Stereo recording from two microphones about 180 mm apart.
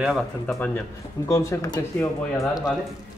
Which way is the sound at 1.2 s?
20° left (ahead or behind).